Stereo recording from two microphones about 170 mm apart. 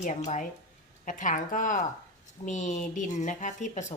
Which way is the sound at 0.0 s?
45° left (ahead or behind).